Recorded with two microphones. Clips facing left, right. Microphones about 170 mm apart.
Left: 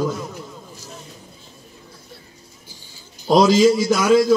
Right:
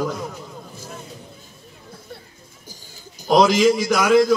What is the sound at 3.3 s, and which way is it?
Speech, 15° right (ahead or behind).